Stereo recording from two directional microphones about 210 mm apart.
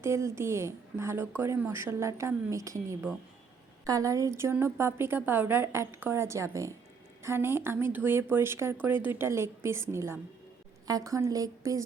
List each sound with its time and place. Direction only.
0.0 s a woman's voice: 15° right (ahead or behind)